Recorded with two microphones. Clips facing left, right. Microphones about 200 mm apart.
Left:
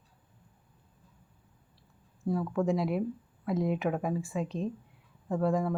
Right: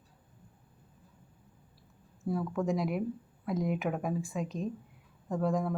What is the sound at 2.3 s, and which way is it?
Speech, centre (ahead or behind).